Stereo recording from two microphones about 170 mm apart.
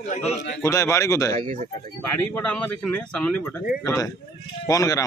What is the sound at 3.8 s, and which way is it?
A man's voice, 20° left (ahead or behind).